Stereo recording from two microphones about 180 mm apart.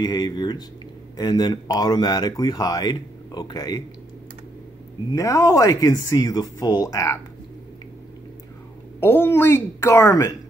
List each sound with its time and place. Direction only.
0.0 s speech: 20° left (ahead or behind)
5.1 s speech: 20° left (ahead or behind)
9.0 s a woman's voice: 10° left (ahead or behind)